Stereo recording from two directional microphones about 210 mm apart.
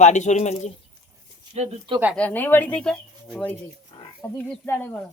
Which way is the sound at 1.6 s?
25° right (ahead or behind).